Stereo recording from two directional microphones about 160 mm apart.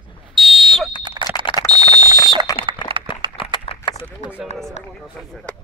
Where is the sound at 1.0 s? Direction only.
30° right (ahead or behind).